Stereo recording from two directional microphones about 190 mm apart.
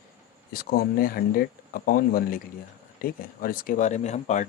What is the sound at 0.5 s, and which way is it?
Speech, 50° left (ahead or behind).